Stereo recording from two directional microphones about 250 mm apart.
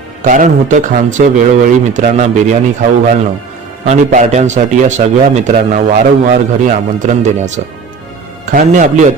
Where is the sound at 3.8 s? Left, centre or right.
Right.